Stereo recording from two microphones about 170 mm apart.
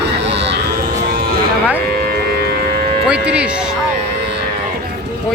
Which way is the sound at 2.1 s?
70° right (ahead or behind).